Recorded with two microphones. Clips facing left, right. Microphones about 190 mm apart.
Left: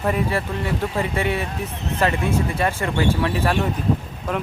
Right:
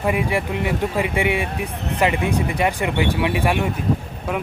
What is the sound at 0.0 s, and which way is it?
Speech, 10° right (ahead or behind).